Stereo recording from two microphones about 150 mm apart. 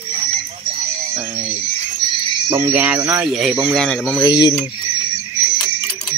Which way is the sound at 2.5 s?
15° right (ahead or behind).